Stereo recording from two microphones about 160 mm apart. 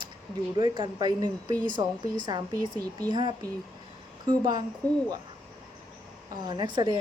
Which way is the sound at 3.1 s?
30° right (ahead or behind).